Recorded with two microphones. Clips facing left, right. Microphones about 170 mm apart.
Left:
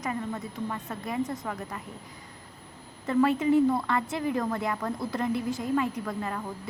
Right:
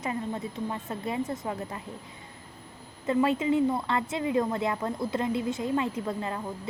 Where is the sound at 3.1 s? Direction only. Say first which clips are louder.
Left 2 dB; 20° right (ahead or behind).